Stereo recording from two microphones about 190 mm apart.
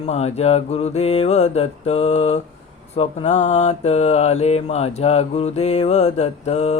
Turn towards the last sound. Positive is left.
turn(degrees=35)  # may be behind; listen again after turning